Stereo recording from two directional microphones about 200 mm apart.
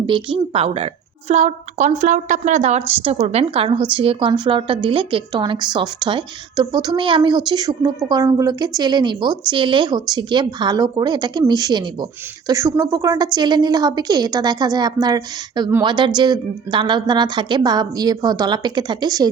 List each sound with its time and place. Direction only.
0.0 s a woman's voice: 25° right (ahead or behind)